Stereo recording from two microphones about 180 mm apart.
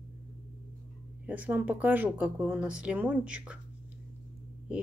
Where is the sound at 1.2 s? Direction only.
10° right (ahead or behind).